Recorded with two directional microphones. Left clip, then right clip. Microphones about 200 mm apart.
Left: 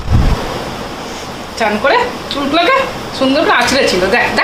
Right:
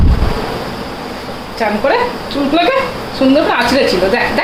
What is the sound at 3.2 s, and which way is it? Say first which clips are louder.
Speech: right 2 dB; 20° right (ahead or behind).